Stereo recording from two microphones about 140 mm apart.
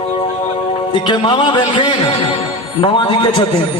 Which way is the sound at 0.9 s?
35° left (ahead or behind).